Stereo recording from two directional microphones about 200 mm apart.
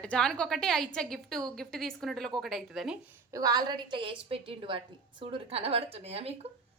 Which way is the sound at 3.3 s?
20° right (ahead or behind).